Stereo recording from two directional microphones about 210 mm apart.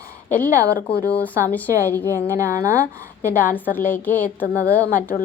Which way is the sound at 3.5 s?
10° left (ahead or behind).